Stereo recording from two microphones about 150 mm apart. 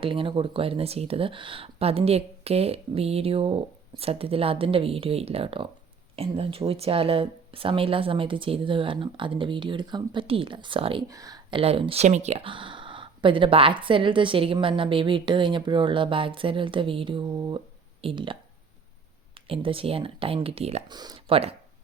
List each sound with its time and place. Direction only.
0.0 s speech: 35° right (ahead or behind)
11.1 s speech: 25° right (ahead or behind)
11.6 s speech: 40° right (ahead or behind)
20.8 s speech: 25° right (ahead or behind)